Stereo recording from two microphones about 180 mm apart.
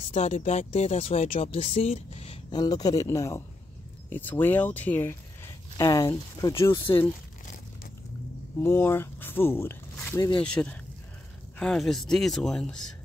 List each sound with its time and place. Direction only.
0.1 s speech: 40° left (ahead or behind); by 6.9 s 20° left (ahead or behind)
8.6 s speech: 15° left (ahead or behind)